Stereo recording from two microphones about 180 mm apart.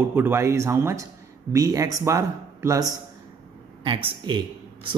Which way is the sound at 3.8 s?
30° right (ahead or behind).